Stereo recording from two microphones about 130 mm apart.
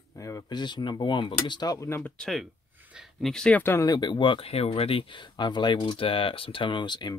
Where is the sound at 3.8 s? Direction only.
35° left (ahead or behind).